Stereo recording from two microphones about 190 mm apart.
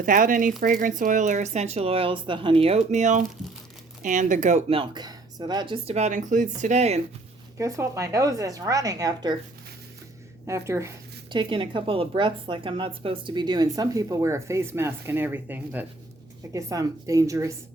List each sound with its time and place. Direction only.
0.0 s speech: 45° right (ahead or behind)
7.6 s speech: 15° right (ahead or behind)
10.7 s a woman's voice: 15° right (ahead or behind)